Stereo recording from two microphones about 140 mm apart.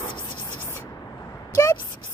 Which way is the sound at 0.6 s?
15° left (ahead or behind).